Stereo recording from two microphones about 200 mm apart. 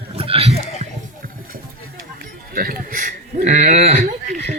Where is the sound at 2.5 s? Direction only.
45° right (ahead or behind).